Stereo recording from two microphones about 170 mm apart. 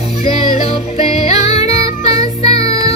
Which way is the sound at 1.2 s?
40° left (ahead or behind).